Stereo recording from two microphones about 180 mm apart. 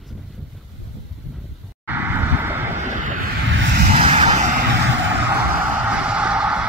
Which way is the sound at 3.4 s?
90° right.